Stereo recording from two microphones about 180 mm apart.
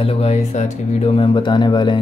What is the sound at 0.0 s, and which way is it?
Speech, 35° left (ahead or behind).